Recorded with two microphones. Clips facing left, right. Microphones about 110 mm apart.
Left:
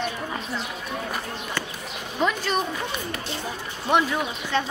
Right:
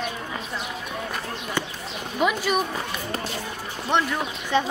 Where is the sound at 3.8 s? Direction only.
5° left (ahead or behind).